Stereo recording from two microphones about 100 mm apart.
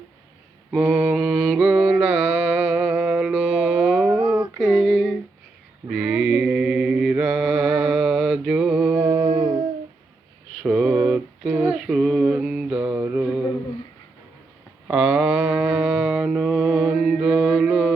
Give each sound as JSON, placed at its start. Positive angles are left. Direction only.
{"t": 0.7, "sound": "mantra", "side_deg": -15}
{"t": 4.6, "sound": "a sound", "side_deg": -5}
{"t": 5.9, "sound": "mantra", "side_deg": -10}
{"t": 9.2, "sound": "humming", "side_deg": -45}
{"t": 10.6, "sound": "mantra", "side_deg": -5}
{"t": 14.8, "sound": "a sound", "side_deg": -10}
{"t": 16.2, "sound": "mantra", "side_deg": -5}